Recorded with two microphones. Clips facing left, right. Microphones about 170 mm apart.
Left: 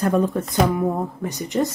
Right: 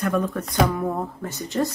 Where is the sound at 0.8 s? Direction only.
15° left (ahead or behind).